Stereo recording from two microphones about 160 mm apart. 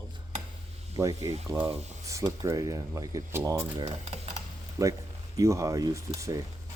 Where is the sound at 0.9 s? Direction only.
20° right (ahead or behind).